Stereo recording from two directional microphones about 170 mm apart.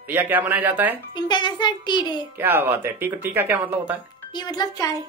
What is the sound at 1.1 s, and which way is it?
A child's voice, 25° left (ahead or behind).